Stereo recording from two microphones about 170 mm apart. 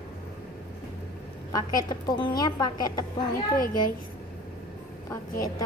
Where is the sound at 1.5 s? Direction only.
20° left (ahead or behind).